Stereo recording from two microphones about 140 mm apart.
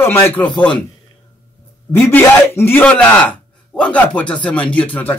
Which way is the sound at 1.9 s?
15° left (ahead or behind).